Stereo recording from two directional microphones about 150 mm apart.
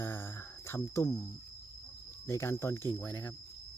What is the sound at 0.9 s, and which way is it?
Speech, 25° left (ahead or behind).